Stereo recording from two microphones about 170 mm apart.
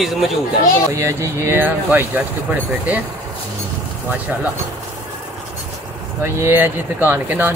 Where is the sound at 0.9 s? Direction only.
20° right (ahead or behind).